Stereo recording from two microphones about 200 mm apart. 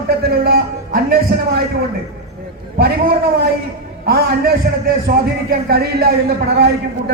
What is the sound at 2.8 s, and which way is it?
A man's voice, 50° right (ahead or behind).